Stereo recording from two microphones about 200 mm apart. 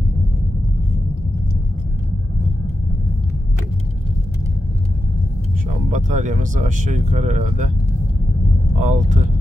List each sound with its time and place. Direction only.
5.9 s speech: 40° right (ahead or behind)
8.7 s speech: 40° right (ahead or behind)